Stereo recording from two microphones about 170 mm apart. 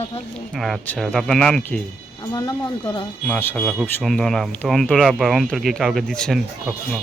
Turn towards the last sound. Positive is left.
turn(degrees=5)  # may be behind; listen again after turning